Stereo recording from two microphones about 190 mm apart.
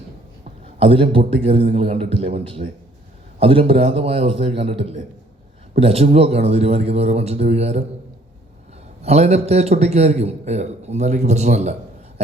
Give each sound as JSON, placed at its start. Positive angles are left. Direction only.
{"t": 0.8, "sound": "a man's voice", "side_deg": -30}
{"t": 9.0, "sound": "a man's voice", "side_deg": -35}